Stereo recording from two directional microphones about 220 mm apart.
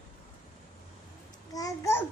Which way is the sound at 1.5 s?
15° left (ahead or behind).